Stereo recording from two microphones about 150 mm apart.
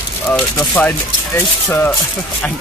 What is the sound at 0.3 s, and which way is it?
Speech, 10° left (ahead or behind).